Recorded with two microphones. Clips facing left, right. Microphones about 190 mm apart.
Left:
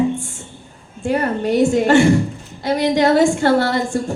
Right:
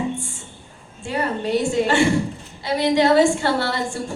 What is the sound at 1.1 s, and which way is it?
Speech, 45° left (ahead or behind).